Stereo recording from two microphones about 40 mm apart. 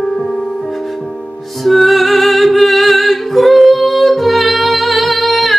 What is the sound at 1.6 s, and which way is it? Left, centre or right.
Music, centre.